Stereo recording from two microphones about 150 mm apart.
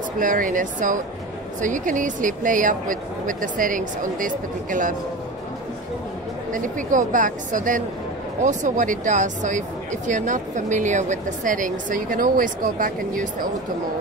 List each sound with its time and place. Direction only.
0.2 s speech: 60° right (ahead or behind)
6.5 s speech: 60° right (ahead or behind)